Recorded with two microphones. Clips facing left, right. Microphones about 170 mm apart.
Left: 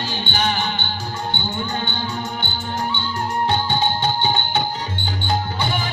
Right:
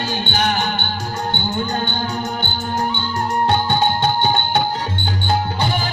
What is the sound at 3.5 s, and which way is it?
Music, 50° right (ahead or behind).